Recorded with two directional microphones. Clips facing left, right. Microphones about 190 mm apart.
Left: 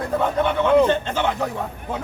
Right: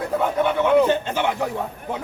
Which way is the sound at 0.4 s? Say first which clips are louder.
Even; 10° right (ahead or behind).